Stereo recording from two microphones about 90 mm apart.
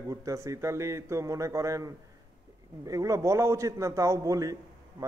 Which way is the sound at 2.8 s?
40° right (ahead or behind).